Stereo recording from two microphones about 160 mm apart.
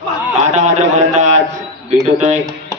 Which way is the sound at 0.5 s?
45° right (ahead or behind).